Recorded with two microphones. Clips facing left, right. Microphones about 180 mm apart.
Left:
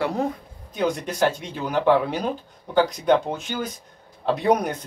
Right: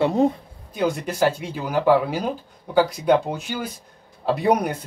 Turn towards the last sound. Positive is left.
turn(degrees=-10)  # may be behind; listen again after turning